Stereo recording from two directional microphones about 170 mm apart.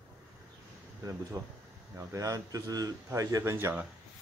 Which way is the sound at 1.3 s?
20° right (ahead or behind).